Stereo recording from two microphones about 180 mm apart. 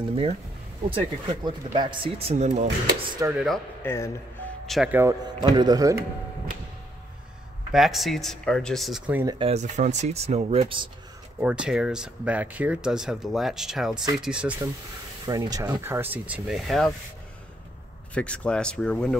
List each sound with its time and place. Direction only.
0.1 s speech: 35° right (ahead or behind)
3.1 s speech: 20° right (ahead or behind)
3.3 s speech: centre (ahead or behind)
3.8 s speech: 15° left (ahead or behind)
4.6 s speech: centre (ahead or behind)
4.9 s speech: 15° right (ahead or behind)
7.7 s speech: centre (ahead or behind)
9.1 s speech: 20° right (ahead or behind)
9.4 s speech: 40° right (ahead or behind)
11.3 s speech: 5° right (ahead or behind)
15.2 s speech: 20° right (ahead or behind); by 16.9 s centre (ahead or behind)
18.1 s speech: 5° left (ahead or behind)